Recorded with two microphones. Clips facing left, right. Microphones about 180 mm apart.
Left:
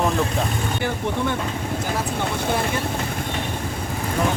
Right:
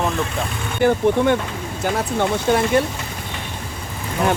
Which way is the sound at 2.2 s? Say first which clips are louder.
Right 8 dB; 65° right (ahead or behind).